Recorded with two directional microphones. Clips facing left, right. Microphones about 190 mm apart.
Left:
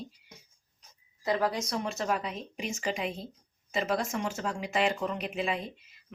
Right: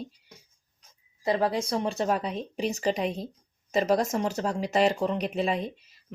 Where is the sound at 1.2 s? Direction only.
30° right (ahead or behind).